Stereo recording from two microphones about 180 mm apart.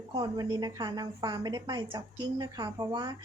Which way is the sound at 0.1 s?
20° right (ahead or behind).